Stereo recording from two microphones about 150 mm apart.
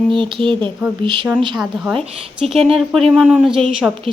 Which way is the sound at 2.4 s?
40° right (ahead or behind).